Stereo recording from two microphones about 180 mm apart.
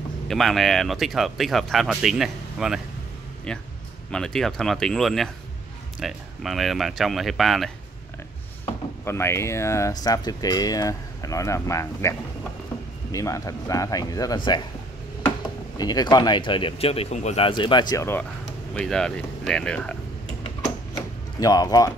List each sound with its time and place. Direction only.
0.3 s speech: centre (ahead or behind)
9.0 s speech: 15° left (ahead or behind)
15.8 s speech: 20° left (ahead or behind)
18.8 s speech: 5° left (ahead or behind)
21.4 s speech: 20° left (ahead or behind)